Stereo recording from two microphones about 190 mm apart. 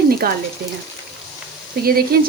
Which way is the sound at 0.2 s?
50° right (ahead or behind).